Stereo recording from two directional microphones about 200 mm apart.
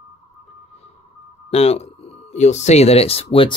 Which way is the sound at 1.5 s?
30° left (ahead or behind).